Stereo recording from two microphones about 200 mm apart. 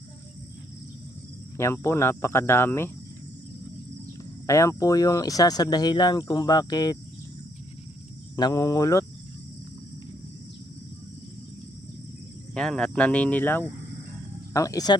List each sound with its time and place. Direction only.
1.5 s cricket: 15° left (ahead or behind)
4.2 s speech: 15° left (ahead or behind)
8.4 s speech: 20° left (ahead or behind)
12.5 s speech: 5° left (ahead or behind)
14.5 s cricket: 15° left (ahead or behind)